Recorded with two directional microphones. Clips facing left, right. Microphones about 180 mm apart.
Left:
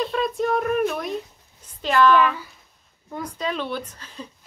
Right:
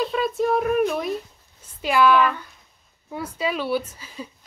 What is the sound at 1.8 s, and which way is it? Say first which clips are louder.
Speech: even; 10° right (ahead or behind).